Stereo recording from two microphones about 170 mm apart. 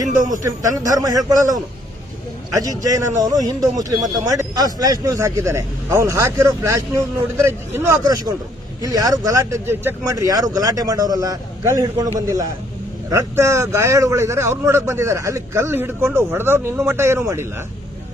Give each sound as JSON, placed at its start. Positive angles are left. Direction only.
{"t": 0.0, "sound": "speech", "side_deg": -20}
{"t": 2.6, "sound": "a man's voice", "side_deg": -20}